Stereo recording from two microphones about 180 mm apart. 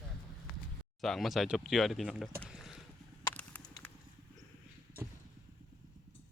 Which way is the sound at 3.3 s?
5° left (ahead or behind).